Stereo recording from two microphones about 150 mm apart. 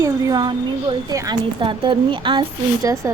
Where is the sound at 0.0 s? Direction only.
25° right (ahead or behind).